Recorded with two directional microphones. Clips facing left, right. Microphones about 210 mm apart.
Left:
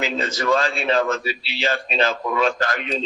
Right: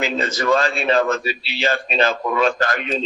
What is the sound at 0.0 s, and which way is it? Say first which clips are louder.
A man's voice: right 2 dB; 50° right (ahead or behind).